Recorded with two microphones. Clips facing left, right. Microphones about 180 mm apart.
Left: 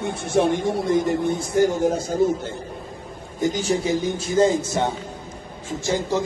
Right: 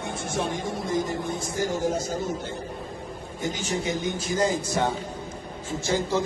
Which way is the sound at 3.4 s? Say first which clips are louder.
Left 7 dB; 40° left (ahead or behind).